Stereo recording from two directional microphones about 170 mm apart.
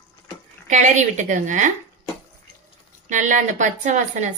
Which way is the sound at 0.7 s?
45° right (ahead or behind).